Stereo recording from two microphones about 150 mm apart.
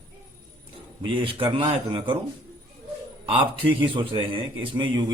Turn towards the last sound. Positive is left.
turn(degrees=-30)  # may be behind; listen again after turning